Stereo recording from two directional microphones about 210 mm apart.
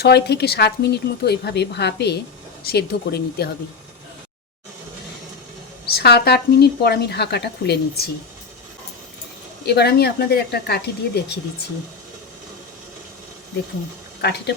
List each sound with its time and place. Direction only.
0.0 s a woman's voice: 50° left (ahead or behind)
5.8 s a woman's voice: 50° left (ahead or behind)
9.6 s a woman's voice: 50° left (ahead or behind)
14.2 s a woman's voice: 50° left (ahead or behind)